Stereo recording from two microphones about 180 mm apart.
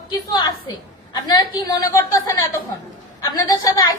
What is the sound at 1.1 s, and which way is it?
A woman's voice, 20° left (ahead or behind).